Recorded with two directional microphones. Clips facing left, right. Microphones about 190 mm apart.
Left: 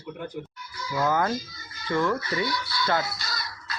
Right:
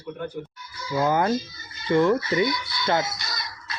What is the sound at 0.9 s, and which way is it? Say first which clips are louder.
Speech: right 3 dB; 25° right (ahead or behind).